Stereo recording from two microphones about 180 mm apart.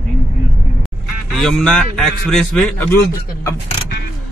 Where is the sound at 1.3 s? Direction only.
5° left (ahead or behind).